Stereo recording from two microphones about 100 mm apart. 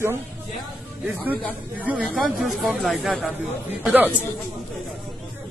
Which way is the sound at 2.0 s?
Centre (ahead or behind).